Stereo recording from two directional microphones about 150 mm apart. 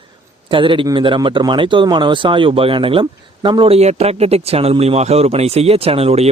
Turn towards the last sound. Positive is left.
turn(degrees=-40)  # may be behind; listen again after turning